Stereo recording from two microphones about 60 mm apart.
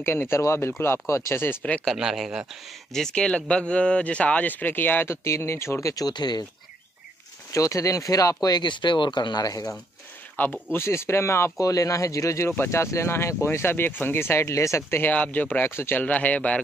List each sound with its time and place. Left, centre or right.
0.0 s speech: left
1.6 s speech: left
2.0 s speech: centre
2.9 s speech: centre; by 5.1 s left
5.1 s speech: left
7.5 s speech: left
10.3 s speech: left
10.9 s speech: left
11.6 s speech: left
12.6 s speech: left
15.1 s speech: left
15.7 s speech: left
16.0 s speech: left